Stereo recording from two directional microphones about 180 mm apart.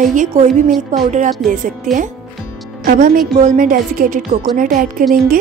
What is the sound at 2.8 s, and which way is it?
A woman's voice, 50° right (ahead or behind).